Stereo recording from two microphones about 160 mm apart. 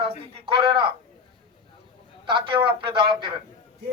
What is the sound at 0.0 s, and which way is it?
Speech, 35° right (ahead or behind).